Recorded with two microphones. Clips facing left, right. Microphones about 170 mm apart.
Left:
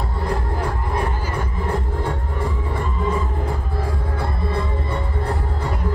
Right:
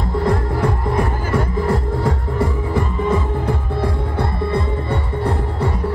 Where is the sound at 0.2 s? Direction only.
90° right.